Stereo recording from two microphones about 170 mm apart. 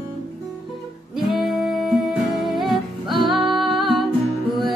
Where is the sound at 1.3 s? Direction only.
Centre (ahead or behind).